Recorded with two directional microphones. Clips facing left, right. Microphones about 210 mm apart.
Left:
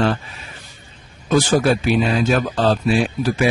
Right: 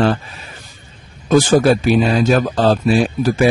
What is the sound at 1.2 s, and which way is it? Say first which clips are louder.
Speech: right 4 dB; 45° right (ahead or behind).